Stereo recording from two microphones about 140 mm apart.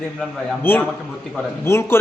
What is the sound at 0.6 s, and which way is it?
A man's voice, 15° left (ahead or behind).